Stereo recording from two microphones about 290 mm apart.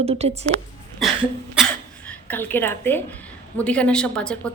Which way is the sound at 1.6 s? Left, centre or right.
Centre.